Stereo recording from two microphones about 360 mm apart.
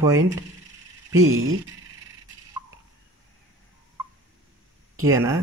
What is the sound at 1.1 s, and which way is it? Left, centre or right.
Speech, right.